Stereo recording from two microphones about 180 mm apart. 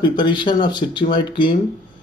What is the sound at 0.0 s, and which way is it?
A man's voice, 25° left (ahead or behind).